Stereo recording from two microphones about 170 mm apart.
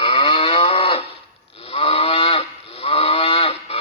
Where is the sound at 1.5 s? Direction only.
35° left (ahead or behind).